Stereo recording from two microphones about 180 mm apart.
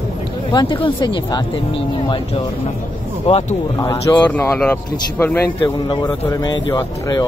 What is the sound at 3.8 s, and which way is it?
Speech, 20° left (ahead or behind).